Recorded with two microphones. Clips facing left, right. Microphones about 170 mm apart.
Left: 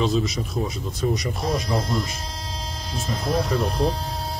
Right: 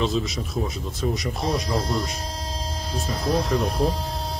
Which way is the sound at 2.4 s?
40° right (ahead or behind).